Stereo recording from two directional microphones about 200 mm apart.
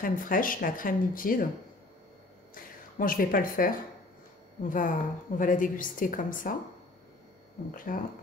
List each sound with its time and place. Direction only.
0.0 s speech: 45° left (ahead or behind)
2.5 s a woman's voice: 45° left (ahead or behind)
7.7 s speech: 45° left (ahead or behind)